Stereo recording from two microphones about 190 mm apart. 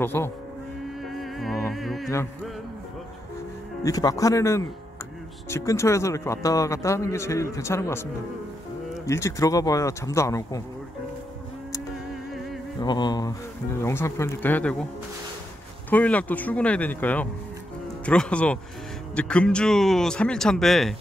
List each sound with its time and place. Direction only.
0.0 s a man's voice: 10° left (ahead or behind)
1.0 s music: centre (ahead or behind)
3.8 s a man's voice: 20° left (ahead or behind)
12.8 s a man's voice: 20° left (ahead or behind); by 14.9 s 5° left (ahead or behind)
15.9 s a man's voice: 10° left (ahead or behind)